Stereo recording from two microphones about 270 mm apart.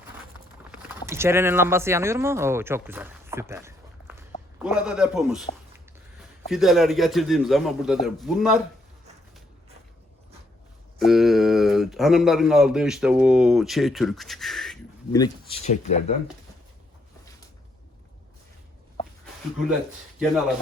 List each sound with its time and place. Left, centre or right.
0.7 s speech: centre
6.5 s speech: centre
11.0 s speech: centre
15.6 s speech: left